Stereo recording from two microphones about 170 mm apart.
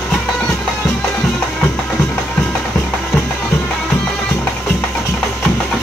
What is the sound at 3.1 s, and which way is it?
Music, 5° left (ahead or behind).